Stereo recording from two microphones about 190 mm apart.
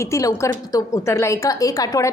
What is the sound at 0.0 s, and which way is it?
A woman's voice, 15° left (ahead or behind).